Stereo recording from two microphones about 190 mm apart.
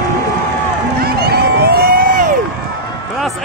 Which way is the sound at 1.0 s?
55° right (ahead or behind).